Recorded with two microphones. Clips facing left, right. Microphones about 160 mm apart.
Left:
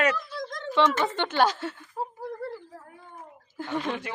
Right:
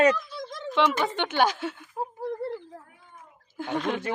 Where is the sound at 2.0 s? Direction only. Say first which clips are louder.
Right 1 dB; 15° right (ahead or behind).